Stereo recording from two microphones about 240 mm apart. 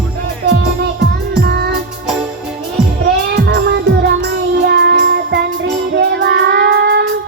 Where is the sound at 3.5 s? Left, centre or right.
Right.